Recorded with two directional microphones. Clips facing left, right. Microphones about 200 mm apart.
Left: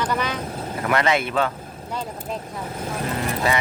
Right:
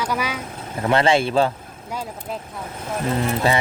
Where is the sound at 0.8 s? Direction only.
30° right (ahead or behind).